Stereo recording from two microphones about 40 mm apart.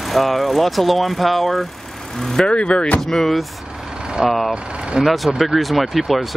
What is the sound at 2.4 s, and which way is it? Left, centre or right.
Speech, left.